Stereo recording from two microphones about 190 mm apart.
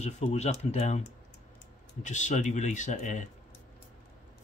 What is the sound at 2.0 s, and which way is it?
Speech, 40° left (ahead or behind).